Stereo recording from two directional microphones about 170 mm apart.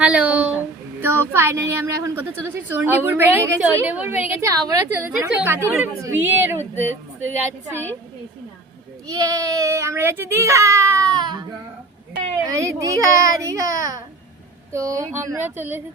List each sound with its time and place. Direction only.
0.0 s a woman's voice: 5° right (ahead or behind)
9.0 s a child's voice: 20° right (ahead or behind)
12.5 s a child's voice: 20° right (ahead or behind)